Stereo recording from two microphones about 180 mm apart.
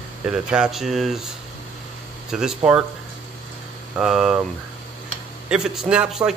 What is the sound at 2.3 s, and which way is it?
Speech, 5° right (ahead or behind).